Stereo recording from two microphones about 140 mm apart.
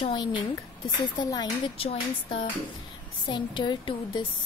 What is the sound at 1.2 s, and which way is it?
Speech, 30° left (ahead or behind).